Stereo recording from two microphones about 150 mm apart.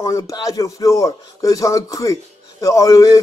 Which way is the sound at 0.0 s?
25° left (ahead or behind).